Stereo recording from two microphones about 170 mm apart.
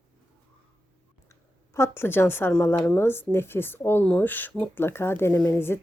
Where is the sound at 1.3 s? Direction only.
15° left (ahead or behind).